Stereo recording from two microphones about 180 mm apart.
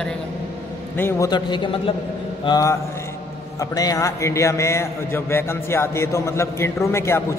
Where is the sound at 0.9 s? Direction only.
10° left (ahead or behind).